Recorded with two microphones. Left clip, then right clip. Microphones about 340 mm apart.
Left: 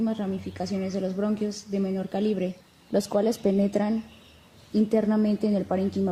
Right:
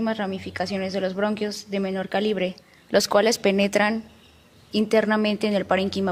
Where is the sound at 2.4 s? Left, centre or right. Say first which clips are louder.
Right 5 dB; right.